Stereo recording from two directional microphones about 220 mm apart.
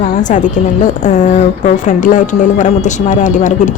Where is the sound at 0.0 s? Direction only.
35° left (ahead or behind).